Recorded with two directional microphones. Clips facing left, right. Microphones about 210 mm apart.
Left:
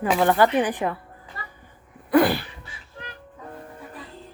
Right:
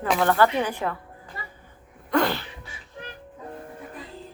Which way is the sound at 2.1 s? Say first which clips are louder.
Left 5 dB; 15° left (ahead or behind).